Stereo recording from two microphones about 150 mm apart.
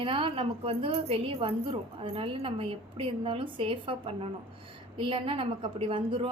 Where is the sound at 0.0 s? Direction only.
35° right (ahead or behind).